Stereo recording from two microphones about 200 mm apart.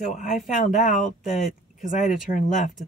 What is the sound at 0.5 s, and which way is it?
Speech, 40° left (ahead or behind).